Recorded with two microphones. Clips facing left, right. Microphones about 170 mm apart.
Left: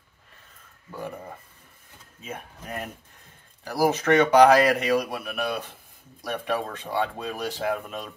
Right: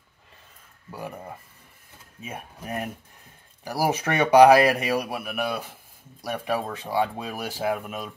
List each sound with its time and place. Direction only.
2.2 s speech: 10° right (ahead or behind)